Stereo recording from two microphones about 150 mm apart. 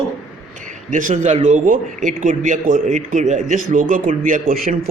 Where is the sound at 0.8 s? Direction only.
60° right (ahead or behind).